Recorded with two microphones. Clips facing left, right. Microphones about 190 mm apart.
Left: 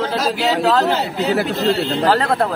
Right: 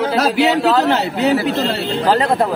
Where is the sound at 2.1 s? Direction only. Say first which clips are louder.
Right 4 dB; 15° right (ahead or behind).